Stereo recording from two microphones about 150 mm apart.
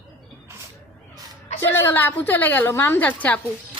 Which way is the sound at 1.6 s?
15° left (ahead or behind).